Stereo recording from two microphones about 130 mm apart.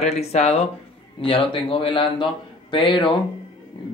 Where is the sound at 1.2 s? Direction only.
45° left (ahead or behind).